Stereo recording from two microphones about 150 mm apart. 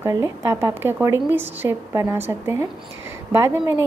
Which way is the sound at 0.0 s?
20° right (ahead or behind).